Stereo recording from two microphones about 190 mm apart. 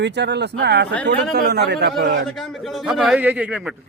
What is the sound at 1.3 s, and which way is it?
Speech, 60° right (ahead or behind).